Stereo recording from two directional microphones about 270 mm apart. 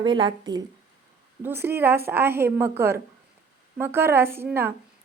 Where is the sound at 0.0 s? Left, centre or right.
Centre.